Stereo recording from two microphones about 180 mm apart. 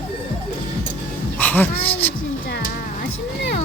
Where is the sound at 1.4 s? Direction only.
10° left (ahead or behind).